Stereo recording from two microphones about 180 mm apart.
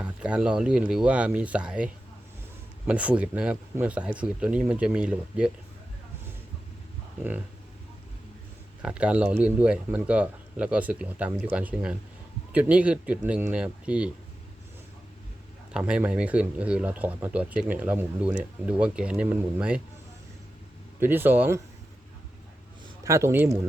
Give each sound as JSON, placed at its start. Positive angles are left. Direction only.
{"t": 0.0, "sound": "speech", "side_deg": -5}
{"t": 8.8, "sound": "speech", "side_deg": -5}
{"t": 15.7, "sound": "speech", "side_deg": -5}
{"t": 21.0, "sound": "speech", "side_deg": -10}
{"t": 23.0, "sound": "speech", "side_deg": -15}